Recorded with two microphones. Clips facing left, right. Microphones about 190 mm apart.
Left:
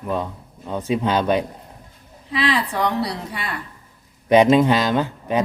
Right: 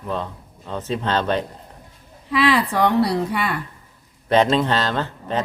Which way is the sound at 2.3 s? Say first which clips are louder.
Right 3 dB; 60° right (ahead or behind).